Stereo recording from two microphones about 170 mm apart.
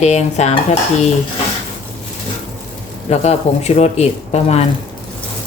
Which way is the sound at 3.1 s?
40° left (ahead or behind).